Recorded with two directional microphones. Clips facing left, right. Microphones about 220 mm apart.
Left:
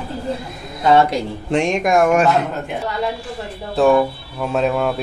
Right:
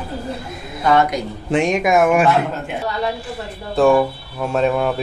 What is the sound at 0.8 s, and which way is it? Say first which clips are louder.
Speech: left 2 dB; 25° left (ahead or behind).